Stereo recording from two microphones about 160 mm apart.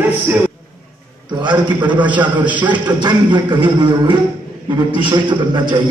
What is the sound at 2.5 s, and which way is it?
Speech, 10° right (ahead or behind).